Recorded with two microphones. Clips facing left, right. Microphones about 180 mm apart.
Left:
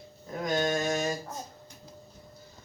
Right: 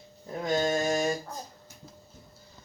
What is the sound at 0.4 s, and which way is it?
Mantra, 25° right (ahead or behind).